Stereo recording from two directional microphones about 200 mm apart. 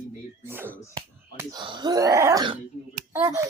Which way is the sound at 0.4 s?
10° right (ahead or behind).